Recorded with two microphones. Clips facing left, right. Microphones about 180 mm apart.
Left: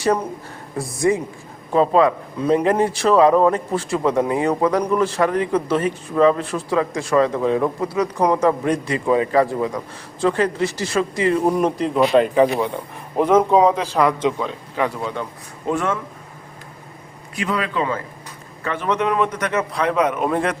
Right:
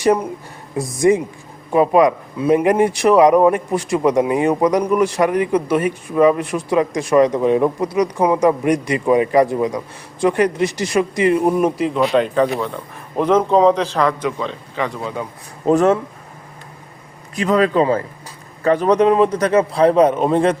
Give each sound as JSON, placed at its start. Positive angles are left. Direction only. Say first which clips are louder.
{"t": 0.0, "sound": "a man's voice", "louder": "right 4 dB", "side_deg": -15}
{"t": 12.1, "sound": "a man's voice", "louder": "left 1 dB", "side_deg": 5}
{"t": 15.6, "sound": "a man's voice", "louder": "right 8 dB", "side_deg": -40}
{"t": 17.3, "sound": "a man's voice", "louder": "right 8 dB", "side_deg": -40}